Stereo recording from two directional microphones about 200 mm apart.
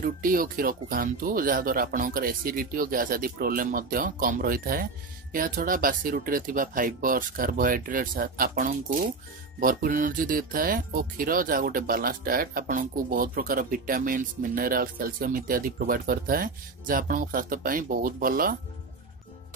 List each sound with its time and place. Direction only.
0.0 s speech: 45° right (ahead or behind)